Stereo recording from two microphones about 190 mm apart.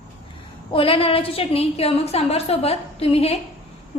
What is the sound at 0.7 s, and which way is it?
A woman's voice, 30° left (ahead or behind).